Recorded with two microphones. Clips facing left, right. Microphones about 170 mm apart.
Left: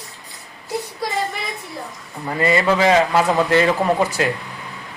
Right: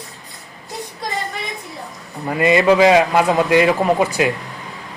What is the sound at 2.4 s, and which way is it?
A man's voice, 20° right (ahead or behind).